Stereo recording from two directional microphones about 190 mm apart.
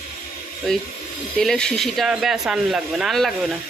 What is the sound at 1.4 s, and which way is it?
Speech, 5° left (ahead or behind).